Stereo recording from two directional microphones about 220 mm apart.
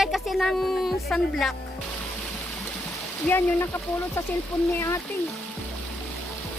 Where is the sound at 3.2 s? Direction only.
10° left (ahead or behind).